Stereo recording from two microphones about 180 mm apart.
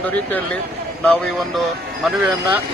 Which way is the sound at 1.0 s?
5° left (ahead or behind).